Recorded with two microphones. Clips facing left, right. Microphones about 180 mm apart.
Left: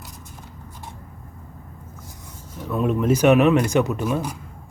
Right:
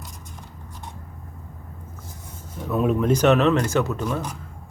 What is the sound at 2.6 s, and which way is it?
Speech, centre (ahead or behind).